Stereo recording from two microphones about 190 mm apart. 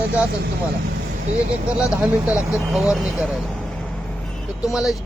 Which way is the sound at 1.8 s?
5° right (ahead or behind).